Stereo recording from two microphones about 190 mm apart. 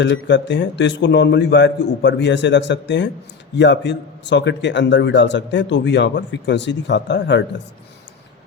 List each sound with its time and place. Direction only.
0.0 s speech: 70° left (ahead or behind)